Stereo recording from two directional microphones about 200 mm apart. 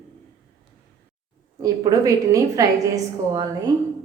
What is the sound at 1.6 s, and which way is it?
A woman's voice, 15° right (ahead or behind).